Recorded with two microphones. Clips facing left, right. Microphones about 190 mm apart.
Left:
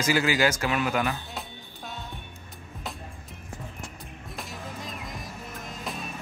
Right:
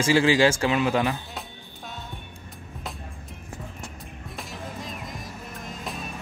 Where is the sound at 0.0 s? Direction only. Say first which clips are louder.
Right 5 dB; 30° right (ahead or behind).